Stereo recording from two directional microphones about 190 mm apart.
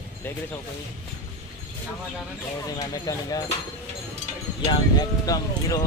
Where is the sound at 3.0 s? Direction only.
20° left (ahead or behind).